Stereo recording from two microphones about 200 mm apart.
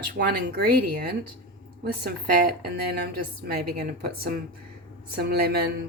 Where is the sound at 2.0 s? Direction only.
50° right (ahead or behind).